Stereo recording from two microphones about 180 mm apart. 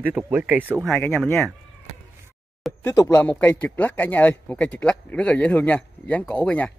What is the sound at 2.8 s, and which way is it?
Speech, 15° left (ahead or behind).